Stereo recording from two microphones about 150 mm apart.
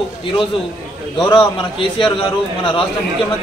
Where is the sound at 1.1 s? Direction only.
35° left (ahead or behind).